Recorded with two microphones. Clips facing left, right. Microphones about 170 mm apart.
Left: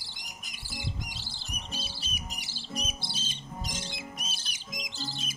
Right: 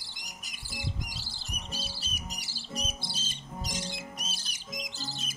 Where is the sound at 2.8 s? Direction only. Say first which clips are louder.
Even; 45° right (ahead or behind).